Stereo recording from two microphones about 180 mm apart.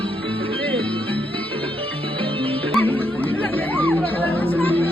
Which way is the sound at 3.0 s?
10° left (ahead or behind).